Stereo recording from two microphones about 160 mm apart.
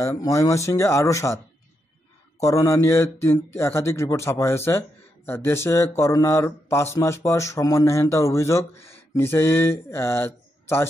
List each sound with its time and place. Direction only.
0.0 s speech: 20° left (ahead or behind)
2.4 s speech: 20° left (ahead or behind)